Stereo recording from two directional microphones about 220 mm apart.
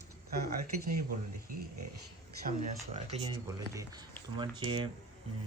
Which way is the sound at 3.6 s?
15° right (ahead or behind).